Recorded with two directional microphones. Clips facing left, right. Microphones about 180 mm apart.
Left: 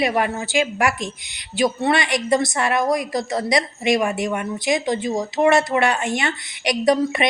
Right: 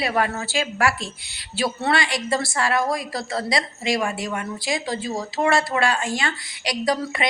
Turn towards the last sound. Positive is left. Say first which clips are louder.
# left 6 dB
turn(degrees=20)  # may be behind; listen again after turning